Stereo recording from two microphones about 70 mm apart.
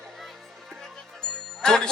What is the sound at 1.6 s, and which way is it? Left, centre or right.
Speech, centre.